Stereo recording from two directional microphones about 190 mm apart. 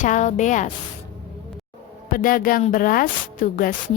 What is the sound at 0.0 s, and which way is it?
Speech, 40° left (ahead or behind).